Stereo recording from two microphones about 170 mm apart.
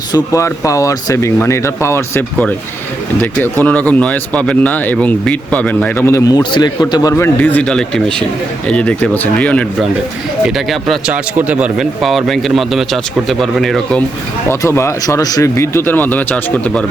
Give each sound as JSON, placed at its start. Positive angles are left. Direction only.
{"t": 0.1, "sound": "speech", "side_deg": 20}
{"t": 14.5, "sound": "speech", "side_deg": 15}